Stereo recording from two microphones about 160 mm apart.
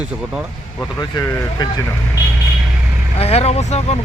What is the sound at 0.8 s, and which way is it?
Speech, 20° left (ahead or behind).